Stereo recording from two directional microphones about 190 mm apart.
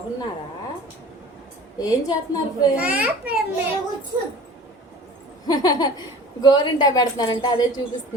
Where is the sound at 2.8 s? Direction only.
5° right (ahead or behind).